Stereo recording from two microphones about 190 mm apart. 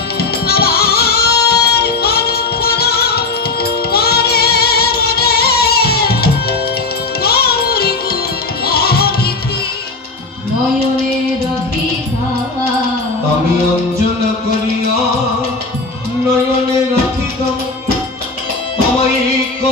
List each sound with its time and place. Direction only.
0.2 s music: 55° left (ahead or behind)